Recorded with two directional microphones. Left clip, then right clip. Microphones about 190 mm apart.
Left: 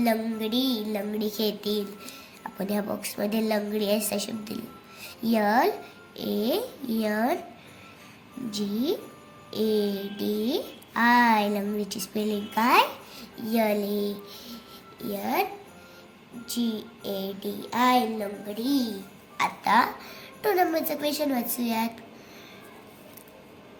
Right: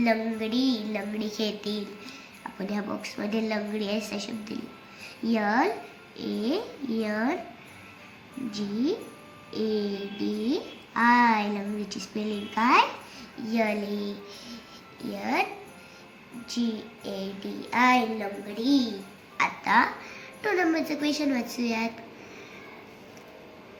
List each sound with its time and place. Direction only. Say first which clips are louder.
0.0 s a woman's voice: even; 60° left (ahead or behind); by 7.3 s 75° left (ahead or behind)
8.5 s a child's voice: left 1 dB; 80° left; by 15.4 s 55° left (ahead or behind)
16.5 s a woman's voice: left 1 dB; 55° left (ahead or behind)